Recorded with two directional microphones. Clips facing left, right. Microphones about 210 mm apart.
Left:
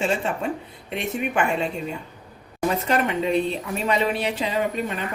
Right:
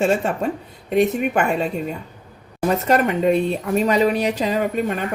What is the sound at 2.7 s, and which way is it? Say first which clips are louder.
Speech: right 4 dB; 45° right (ahead or behind).